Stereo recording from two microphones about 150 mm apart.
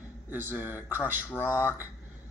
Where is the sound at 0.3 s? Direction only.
15° right (ahead or behind).